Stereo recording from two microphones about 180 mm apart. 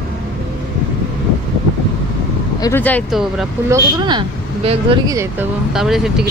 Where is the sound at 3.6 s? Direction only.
20° right (ahead or behind).